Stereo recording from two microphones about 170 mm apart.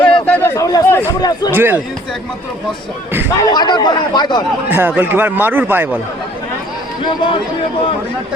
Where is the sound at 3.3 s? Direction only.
20° left (ahead or behind).